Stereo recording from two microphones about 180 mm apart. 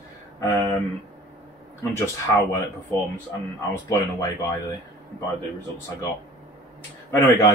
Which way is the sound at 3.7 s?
15° left (ahead or behind).